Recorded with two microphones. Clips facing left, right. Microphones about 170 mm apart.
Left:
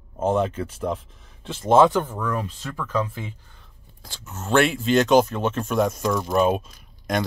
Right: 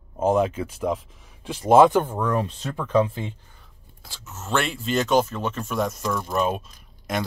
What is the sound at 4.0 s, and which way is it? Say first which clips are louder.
Speech: left 3 dB; centre (ahead or behind).